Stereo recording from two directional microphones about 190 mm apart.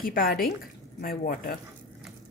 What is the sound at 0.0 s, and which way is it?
A woman's voice, 50° left (ahead or behind).